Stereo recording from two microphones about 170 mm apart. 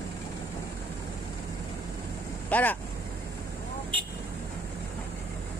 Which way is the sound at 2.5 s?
10° left (ahead or behind).